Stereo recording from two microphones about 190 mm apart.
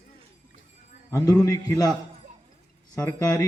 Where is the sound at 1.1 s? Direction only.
15° left (ahead or behind).